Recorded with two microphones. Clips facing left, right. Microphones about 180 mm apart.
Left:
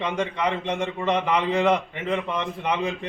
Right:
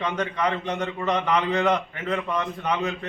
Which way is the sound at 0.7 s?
25° left (ahead or behind).